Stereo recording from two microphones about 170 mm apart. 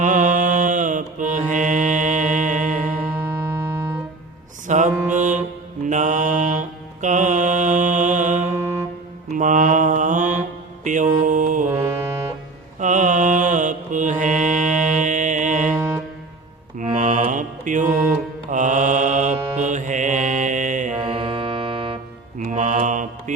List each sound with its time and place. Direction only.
0.0 s mantra: 45° right (ahead or behind)
2.7 s music: 15° right (ahead or behind)
4.6 s mantra: 45° right (ahead or behind)
5.1 s music: 45° right (ahead or behind)
5.8 s mantra: 45° right (ahead or behind)
8.4 s music: 15° right (ahead or behind)
9.4 s mantra: 45° right (ahead or behind)
12.8 s mantra: 45° right (ahead or behind)
15.7 s music: 15° right (ahead or behind)
16.7 s mantra: 45° right (ahead or behind)
21.0 s organ: 30° right (ahead or behind)
22.4 s mantra: 45° right (ahead or behind)